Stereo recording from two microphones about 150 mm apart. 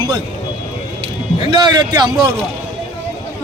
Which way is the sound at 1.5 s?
30° right (ahead or behind).